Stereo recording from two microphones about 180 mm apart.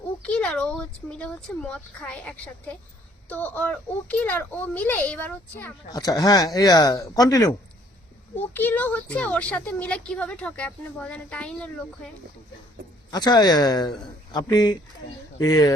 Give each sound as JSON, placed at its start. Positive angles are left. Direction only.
{"t": 0.2, "sound": "a child's voice", "side_deg": 5}
{"t": 13.1, "sound": "speech", "side_deg": 20}